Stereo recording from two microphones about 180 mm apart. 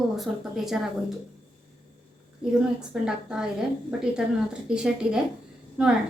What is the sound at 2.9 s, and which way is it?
Speech, 5° right (ahead or behind).